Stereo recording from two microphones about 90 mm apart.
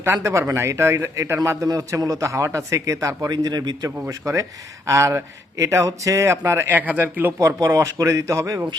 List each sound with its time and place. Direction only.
0.0 s speech: 30° right (ahead or behind)
1.6 s speech: 45° right (ahead or behind)
3.2 s a man's voice: 50° right (ahead or behind)
4.9 s speech: 35° right (ahead or behind)
7.3 s speech: 35° right (ahead or behind)